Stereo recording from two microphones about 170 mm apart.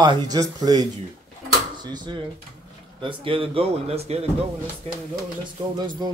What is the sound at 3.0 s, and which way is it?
Speech, 30° right (ahead or behind).